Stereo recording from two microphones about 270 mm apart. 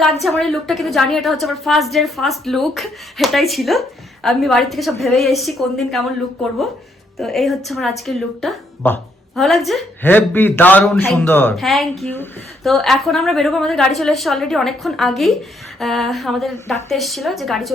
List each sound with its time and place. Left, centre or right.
0.2 s speech: centre
7.2 s speech: centre